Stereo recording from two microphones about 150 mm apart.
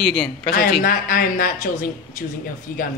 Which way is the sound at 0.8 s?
70° left (ahead or behind).